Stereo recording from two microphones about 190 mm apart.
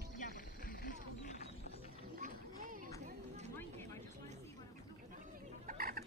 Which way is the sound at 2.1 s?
45° right (ahead or behind).